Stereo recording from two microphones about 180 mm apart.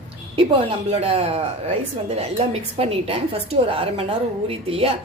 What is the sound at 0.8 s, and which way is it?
A woman's voice, 35° right (ahead or behind).